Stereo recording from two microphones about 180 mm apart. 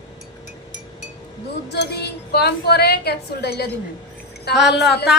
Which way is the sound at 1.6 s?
65° left (ahead or behind).